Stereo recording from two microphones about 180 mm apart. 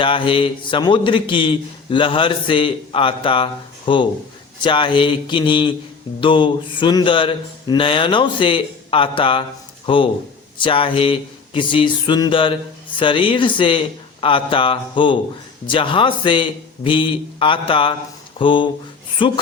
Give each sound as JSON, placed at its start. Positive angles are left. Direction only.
{"t": 0.0, "sound": "a man's voice", "side_deg": 30}